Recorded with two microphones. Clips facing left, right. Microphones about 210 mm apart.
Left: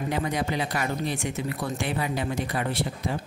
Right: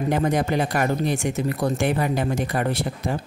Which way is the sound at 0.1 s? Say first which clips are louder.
Right 6 dB; 50° right (ahead or behind).